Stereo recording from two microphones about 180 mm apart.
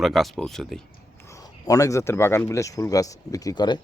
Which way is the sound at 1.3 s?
20° left (ahead or behind).